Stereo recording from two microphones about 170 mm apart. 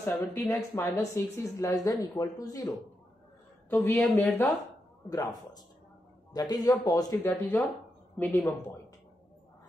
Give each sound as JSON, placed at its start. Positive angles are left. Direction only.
{"t": 0.0, "sound": "a woman's voice", "side_deg": 10}
{"t": 3.7, "sound": "speech", "side_deg": 10}
{"t": 5.1, "sound": "a woman's voice", "side_deg": 20}
{"t": 8.2, "sound": "speech", "side_deg": 10}